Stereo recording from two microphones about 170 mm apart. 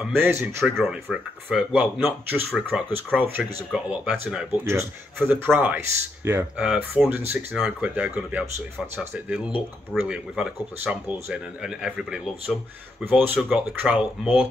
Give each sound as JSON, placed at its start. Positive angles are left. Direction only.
{"t": 0.0, "sound": "speech", "side_deg": -15}
{"t": 1.0, "sound": "speech", "side_deg": 0}
{"t": 2.3, "sound": "speech", "side_deg": -15}
{"t": 13.0, "sound": "speech", "side_deg": -10}